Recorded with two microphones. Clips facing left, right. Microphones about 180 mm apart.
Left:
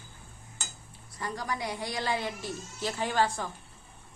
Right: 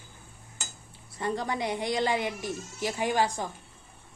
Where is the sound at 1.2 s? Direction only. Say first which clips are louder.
Right 5 dB; 25° right (ahead or behind).